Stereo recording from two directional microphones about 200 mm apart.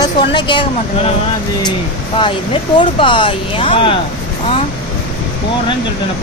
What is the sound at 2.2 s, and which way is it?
Speech, 25° left (ahead or behind).